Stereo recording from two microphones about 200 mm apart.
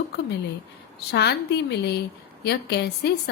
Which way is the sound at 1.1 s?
55° left (ahead or behind).